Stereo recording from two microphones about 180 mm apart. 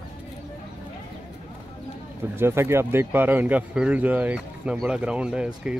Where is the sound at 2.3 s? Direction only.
15° right (ahead or behind).